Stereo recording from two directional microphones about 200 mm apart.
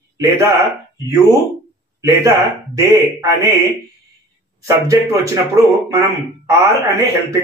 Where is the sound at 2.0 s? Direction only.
15° right (ahead or behind).